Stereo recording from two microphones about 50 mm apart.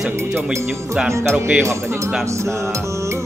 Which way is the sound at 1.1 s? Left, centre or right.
Right.